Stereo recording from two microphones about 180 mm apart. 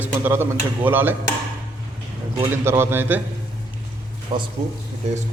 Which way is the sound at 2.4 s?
15° right (ahead or behind).